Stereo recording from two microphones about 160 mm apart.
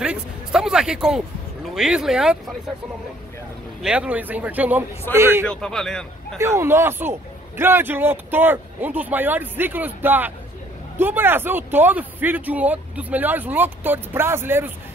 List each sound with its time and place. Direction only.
0.0 s a sound: 5° right (ahead or behind)
1.7 s speech: 5° right (ahead or behind)
3.8 s a man's voice: 5° right (ahead or behind)
5.5 s speech: 5° left (ahead or behind)
6.3 s a man's voice: 15° right (ahead or behind)